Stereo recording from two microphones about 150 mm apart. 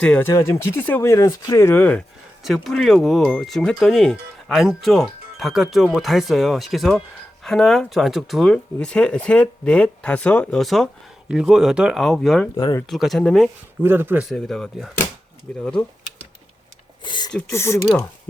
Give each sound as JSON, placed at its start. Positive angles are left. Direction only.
{"t": 0.0, "sound": "speech", "side_deg": 10}
{"t": 2.4, "sound": "speech", "side_deg": 0}
{"t": 12.5, "sound": "speech", "side_deg": 25}
{"t": 12.9, "sound": "speech", "side_deg": 0}
{"t": 13.8, "sound": "speech", "side_deg": -15}
{"t": 14.3, "sound": "speech", "side_deg": 0}
{"t": 17.0, "sound": "a sound", "side_deg": 30}
{"t": 17.5, "sound": "speech", "side_deg": 20}